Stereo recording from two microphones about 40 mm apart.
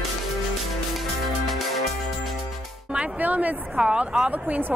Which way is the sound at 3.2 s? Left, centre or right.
Right.